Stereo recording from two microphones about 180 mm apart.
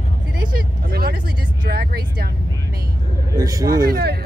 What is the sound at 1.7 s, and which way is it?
Speech, 55° right (ahead or behind).